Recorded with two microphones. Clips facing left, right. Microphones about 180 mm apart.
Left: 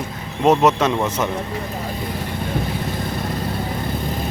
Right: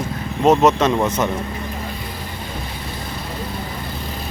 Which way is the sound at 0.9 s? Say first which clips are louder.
Right 2 dB; 5° right (ahead or behind).